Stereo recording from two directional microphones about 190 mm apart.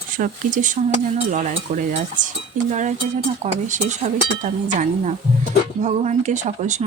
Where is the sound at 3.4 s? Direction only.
40° right (ahead or behind).